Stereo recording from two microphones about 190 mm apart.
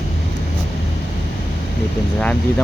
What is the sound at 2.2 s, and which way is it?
Speech, 5° left (ahead or behind).